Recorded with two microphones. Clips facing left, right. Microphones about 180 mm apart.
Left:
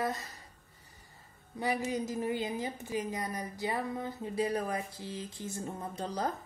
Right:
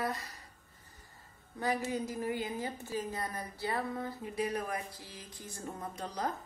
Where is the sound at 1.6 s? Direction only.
15° left (ahead or behind).